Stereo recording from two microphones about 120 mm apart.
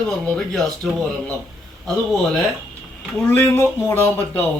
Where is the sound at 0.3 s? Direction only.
5° left (ahead or behind).